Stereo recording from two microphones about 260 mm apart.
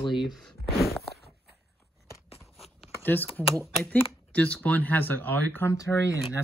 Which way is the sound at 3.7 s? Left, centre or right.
Centre.